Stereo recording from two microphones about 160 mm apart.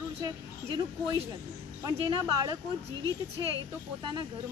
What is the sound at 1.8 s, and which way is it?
Speech, 30° right (ahead or behind).